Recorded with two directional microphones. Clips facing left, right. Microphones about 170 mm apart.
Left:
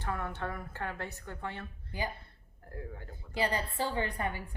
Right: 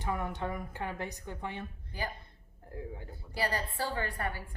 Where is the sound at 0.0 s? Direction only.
15° right (ahead or behind).